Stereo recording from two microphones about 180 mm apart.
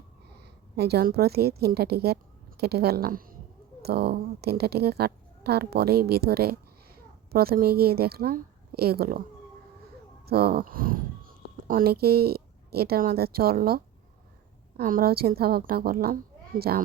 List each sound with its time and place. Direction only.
0.8 s a woman's voice: 60° right (ahead or behind)
10.2 s speech: 60° right (ahead or behind)